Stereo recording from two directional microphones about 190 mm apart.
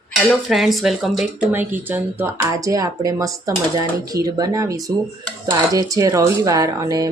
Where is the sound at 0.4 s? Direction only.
Centre (ahead or behind).